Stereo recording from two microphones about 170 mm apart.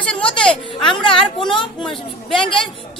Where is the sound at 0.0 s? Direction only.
5° left (ahead or behind).